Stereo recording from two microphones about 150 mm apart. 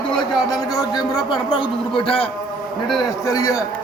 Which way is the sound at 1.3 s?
35° left (ahead or behind).